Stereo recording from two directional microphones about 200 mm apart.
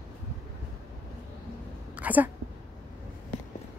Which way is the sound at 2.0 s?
10° right (ahead or behind).